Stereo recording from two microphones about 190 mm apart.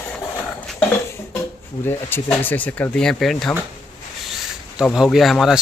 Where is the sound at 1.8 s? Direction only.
10° left (ahead or behind).